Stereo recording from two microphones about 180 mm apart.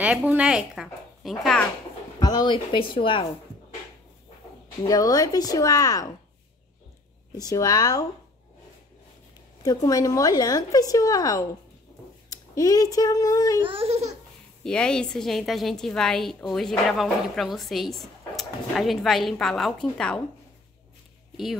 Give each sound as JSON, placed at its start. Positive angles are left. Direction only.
{"t": 0.0, "sound": "speech", "side_deg": -5}
{"t": 2.1, "sound": "a woman's voice", "side_deg": 20}
{"t": 4.8, "sound": "a woman's voice", "side_deg": 20}
{"t": 7.3, "sound": "a woman's voice", "side_deg": 20}
{"t": 9.6, "sound": "a woman's voice", "side_deg": 20}
{"t": 13.6, "sound": "speech", "side_deg": -30}
{"t": 14.6, "sound": "a woman's voice", "side_deg": 5}